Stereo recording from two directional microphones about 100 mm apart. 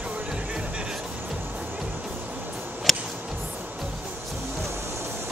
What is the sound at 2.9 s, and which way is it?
Music, centre (ahead or behind).